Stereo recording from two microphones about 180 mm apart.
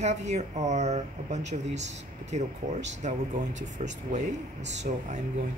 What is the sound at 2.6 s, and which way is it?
Speech, 50° right (ahead or behind).